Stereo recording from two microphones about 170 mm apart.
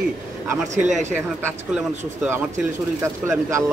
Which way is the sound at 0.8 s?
45° right (ahead or behind).